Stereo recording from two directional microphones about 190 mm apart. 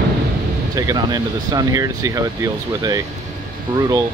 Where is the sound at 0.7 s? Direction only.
20° right (ahead or behind).